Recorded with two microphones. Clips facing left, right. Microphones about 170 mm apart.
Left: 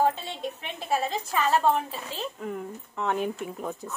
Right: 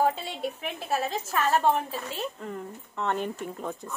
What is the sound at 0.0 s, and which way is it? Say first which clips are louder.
A woman's voice: even; 10° right (ahead or behind).